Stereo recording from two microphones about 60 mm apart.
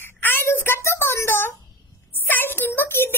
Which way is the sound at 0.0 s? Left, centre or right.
Left.